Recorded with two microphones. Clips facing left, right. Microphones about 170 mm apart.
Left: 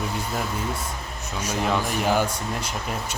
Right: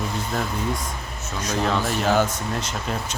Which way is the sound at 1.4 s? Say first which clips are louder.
Right 1 dB; 10° left (ahead or behind).